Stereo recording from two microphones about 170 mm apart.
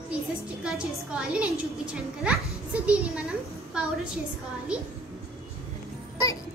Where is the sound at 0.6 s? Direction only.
5° right (ahead or behind).